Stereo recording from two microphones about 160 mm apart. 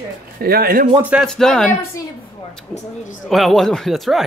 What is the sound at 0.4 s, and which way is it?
Speech, 70° right (ahead or behind).